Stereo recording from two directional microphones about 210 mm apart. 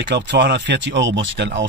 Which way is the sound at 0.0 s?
60° right (ahead or behind).